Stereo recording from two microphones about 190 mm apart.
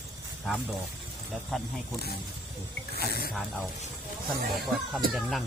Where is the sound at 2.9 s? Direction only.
55° left (ahead or behind).